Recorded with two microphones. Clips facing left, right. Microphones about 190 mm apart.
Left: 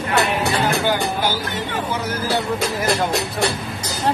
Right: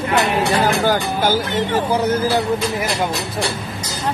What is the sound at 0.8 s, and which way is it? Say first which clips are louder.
Music: right 3 dB; 45° right (ahead or behind).